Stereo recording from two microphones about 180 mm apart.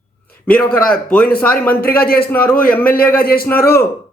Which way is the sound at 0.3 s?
10° left (ahead or behind).